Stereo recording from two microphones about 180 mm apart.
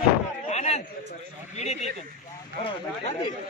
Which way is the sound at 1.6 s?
40° left (ahead or behind).